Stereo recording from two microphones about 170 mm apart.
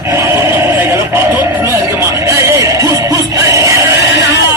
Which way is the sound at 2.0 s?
15° right (ahead or behind).